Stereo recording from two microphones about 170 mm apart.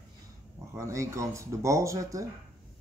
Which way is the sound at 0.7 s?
15° right (ahead or behind).